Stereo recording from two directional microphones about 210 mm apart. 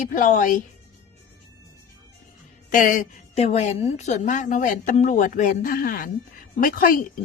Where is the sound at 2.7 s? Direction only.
40° left (ahead or behind).